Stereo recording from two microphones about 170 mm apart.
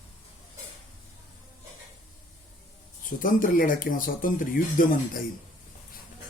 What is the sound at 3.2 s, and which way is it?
Speech, 55° left (ahead or behind).